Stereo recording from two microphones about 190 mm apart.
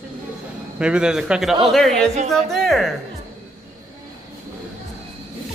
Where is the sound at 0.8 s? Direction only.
5° right (ahead or behind).